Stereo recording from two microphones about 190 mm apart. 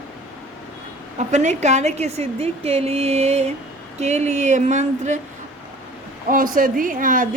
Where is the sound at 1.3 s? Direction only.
40° right (ahead or behind).